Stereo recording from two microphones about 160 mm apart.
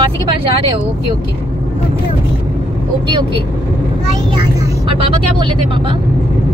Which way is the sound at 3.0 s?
30° right (ahead or behind).